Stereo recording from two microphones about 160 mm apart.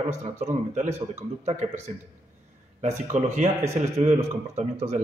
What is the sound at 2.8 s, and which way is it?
Speech, 45° right (ahead or behind).